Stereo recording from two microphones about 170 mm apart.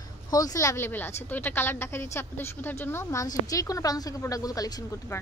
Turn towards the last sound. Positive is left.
turn(degrees=20)  # may be behind; listen again after turning